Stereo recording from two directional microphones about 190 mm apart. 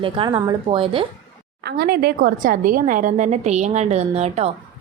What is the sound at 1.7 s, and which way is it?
A woman's voice, 55° right (ahead or behind).